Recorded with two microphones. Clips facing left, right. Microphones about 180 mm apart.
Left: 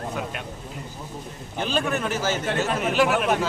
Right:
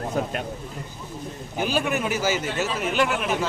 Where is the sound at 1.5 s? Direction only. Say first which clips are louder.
Right 1 dB; 10° right (ahead or behind).